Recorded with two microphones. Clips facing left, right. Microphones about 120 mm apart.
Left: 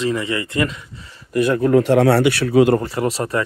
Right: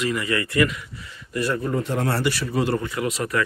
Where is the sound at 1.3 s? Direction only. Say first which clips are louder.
Left 9 dB; 55° left (ahead or behind).